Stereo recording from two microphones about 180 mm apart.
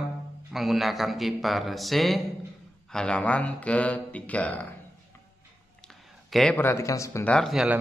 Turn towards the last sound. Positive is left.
turn(degrees=0)  # may be behind; listen again after turning